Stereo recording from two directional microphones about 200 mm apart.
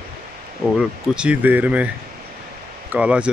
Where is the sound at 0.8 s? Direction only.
5° right (ahead or behind).